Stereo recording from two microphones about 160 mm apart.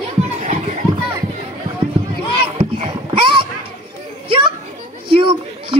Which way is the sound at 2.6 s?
30° right (ahead or behind).